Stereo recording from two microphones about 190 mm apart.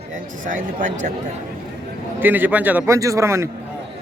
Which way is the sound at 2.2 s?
10° right (ahead or behind).